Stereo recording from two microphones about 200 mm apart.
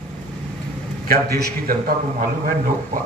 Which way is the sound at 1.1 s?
50° right (ahead or behind).